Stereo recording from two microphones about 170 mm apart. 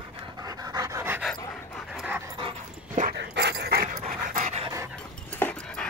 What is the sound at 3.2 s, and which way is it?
Dog, 85° right.